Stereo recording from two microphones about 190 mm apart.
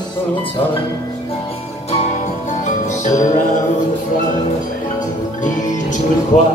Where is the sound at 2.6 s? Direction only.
40° left (ahead or behind).